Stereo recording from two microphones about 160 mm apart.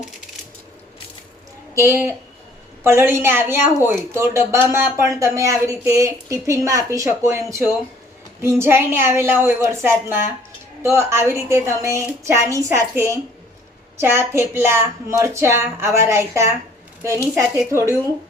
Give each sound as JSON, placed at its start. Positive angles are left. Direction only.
{"t": 1.7, "sound": "speech", "side_deg": -15}